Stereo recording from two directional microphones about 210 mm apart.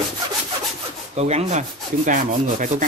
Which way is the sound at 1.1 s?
30° right (ahead or behind).